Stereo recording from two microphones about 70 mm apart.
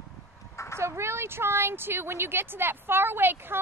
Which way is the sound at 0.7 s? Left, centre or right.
Right.